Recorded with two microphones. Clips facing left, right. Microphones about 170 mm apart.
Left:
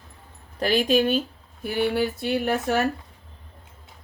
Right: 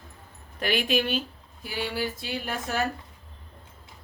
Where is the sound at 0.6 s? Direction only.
35° left (ahead or behind).